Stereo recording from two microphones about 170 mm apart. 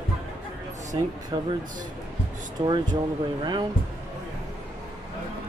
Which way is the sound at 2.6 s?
25° right (ahead or behind).